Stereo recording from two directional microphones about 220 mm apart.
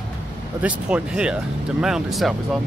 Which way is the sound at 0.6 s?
5° right (ahead or behind).